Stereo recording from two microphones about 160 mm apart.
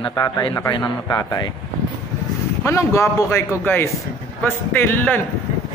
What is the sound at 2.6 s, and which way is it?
Speech, 20° left (ahead or behind).